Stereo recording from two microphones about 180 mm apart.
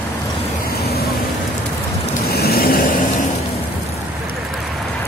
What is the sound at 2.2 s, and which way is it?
Vehicle, 60° left (ahead or behind).